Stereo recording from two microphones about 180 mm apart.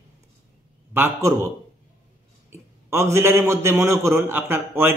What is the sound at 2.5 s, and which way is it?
Speech, 15° right (ahead or behind).